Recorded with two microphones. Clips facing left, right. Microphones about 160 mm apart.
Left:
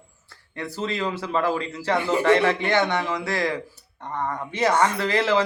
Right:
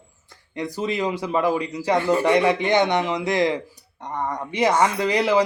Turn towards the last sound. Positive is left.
turn(degrees=-15)  # may be behind; listen again after turning